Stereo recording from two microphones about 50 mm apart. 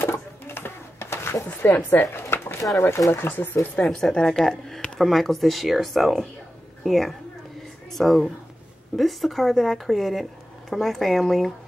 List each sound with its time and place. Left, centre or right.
0.0 s a sound: left
1.9 s speech: left
2.2 s a sound: left
2.8 s speech: left
3.8 s speech: left
4.1 s a woman's voice: centre